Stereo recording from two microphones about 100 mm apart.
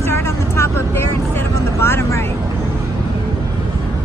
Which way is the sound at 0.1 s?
25° left (ahead or behind).